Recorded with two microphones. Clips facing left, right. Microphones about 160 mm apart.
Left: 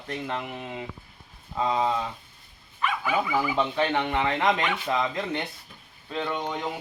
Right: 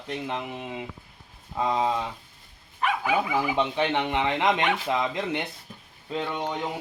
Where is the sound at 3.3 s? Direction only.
15° right (ahead or behind).